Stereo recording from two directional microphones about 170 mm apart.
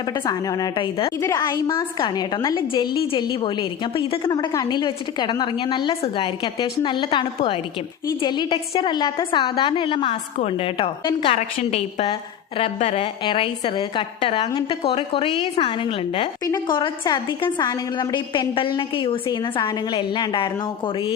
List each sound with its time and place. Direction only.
0.3 s a woman's voice: 20° left (ahead or behind)